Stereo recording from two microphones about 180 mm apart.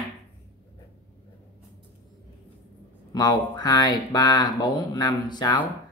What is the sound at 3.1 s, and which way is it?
Speech, 25° left (ahead or behind).